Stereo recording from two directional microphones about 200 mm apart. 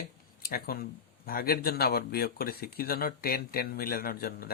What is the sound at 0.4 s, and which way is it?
Speech, 50° left (ahead or behind).